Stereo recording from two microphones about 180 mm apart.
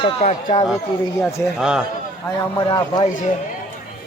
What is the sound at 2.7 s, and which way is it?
Speech, 25° left (ahead or behind).